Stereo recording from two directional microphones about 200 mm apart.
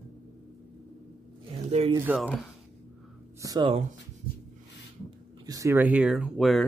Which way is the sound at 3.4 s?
20° right (ahead or behind).